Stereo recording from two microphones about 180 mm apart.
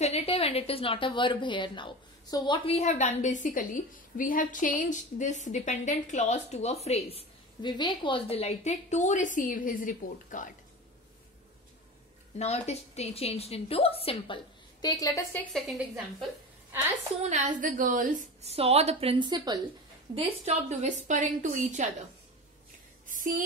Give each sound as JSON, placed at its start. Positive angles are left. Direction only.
{"t": 0.0, "sound": "a woman's voice", "side_deg": 35}
{"t": 12.4, "sound": "a woman's voice", "side_deg": 35}
{"t": 17.2, "sound": "a woman's voice", "side_deg": -45}
{"t": 18.5, "sound": "a woman's voice", "side_deg": -35}
{"t": 23.0, "sound": "speech", "side_deg": -45}